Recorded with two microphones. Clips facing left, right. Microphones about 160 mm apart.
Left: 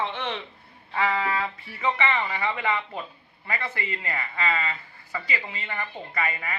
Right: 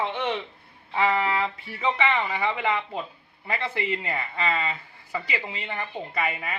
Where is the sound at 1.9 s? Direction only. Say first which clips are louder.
Right 2 dB; 15° right (ahead or behind).